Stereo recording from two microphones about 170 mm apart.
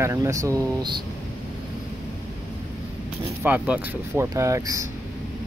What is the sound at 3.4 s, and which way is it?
Speech, 10° right (ahead or behind).